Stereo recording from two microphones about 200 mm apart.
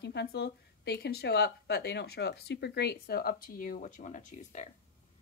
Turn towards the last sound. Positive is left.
turn(degrees=35)  # may be behind; listen again after turning